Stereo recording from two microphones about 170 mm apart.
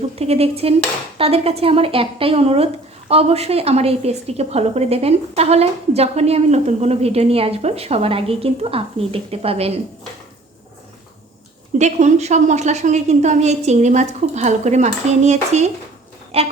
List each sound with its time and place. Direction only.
0.2 s a woman's voice: 35° right (ahead or behind)
11.8 s a woman's voice: 45° right (ahead or behind)